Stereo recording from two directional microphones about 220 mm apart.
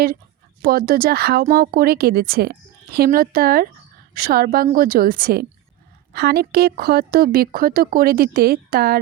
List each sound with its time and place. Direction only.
0.6 s a woman's voice: 40° right (ahead or behind)